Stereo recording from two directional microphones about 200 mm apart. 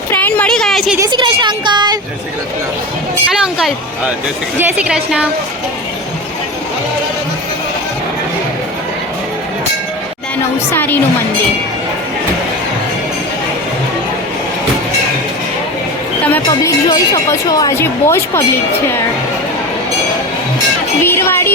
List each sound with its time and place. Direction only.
0.1 s a sound: 10° left (ahead or behind)
0.9 s a woman's voice: 20° right (ahead or behind)
3.4 s a woman's voice: 5° right (ahead or behind)
10.7 s speech: 10° left (ahead or behind)
16.2 s speech: 10° left (ahead or behind)
21.0 s music: 10° left (ahead or behind)